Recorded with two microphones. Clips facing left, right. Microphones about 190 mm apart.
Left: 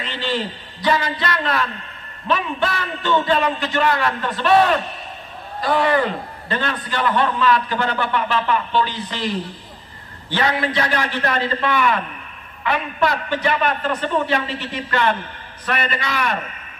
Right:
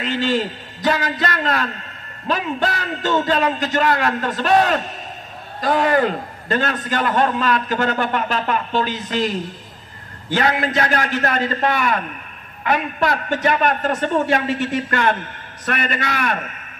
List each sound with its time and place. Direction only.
0.0 s a man's voice: 45° right (ahead or behind)
10.7 s a man's voice: 45° right (ahead or behind)